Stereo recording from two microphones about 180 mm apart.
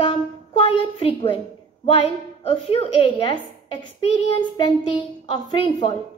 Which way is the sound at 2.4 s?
35° left (ahead or behind).